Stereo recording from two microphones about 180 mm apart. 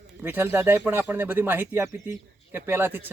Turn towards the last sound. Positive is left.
turn(degrees=-10)  # may be behind; listen again after turning